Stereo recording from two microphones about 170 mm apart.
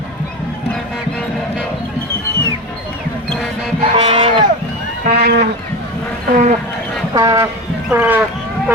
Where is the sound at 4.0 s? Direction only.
30° right (ahead or behind).